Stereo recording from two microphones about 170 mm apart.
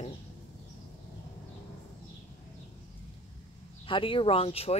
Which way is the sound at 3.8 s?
30° left (ahead or behind).